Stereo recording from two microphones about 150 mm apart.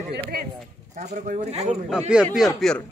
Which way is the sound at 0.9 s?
55° right (ahead or behind).